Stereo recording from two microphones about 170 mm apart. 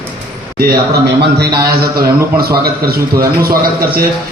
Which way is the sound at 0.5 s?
65° right (ahead or behind).